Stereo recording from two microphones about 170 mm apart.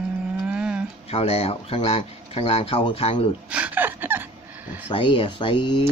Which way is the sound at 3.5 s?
10° right (ahead or behind).